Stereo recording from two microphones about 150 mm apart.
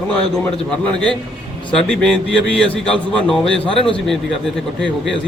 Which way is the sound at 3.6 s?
35° left (ahead or behind).